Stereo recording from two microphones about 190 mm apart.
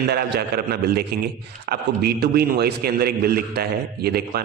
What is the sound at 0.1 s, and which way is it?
A man's voice, 55° right (ahead or behind).